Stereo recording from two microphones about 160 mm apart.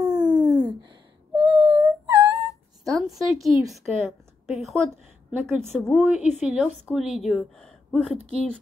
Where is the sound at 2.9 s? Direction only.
Centre (ahead or behind).